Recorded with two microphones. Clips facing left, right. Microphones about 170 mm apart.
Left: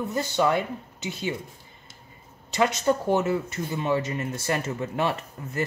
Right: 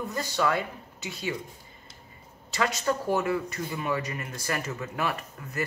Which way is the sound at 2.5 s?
20° left (ahead or behind).